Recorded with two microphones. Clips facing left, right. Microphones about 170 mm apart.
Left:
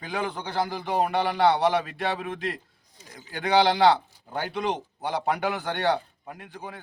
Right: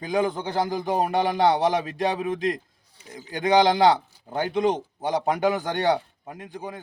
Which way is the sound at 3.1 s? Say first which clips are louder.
Right 3 dB; 15° right (ahead or behind).